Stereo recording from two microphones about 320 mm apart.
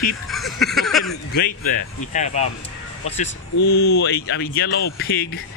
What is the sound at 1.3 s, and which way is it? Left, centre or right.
A man's voice, left.